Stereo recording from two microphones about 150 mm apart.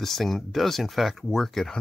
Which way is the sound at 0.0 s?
Centre (ahead or behind).